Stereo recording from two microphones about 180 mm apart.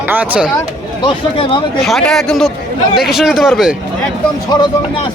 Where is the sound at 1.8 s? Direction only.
Centre (ahead or behind).